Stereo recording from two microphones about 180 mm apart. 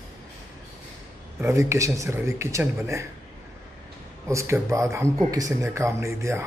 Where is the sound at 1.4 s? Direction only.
15° right (ahead or behind).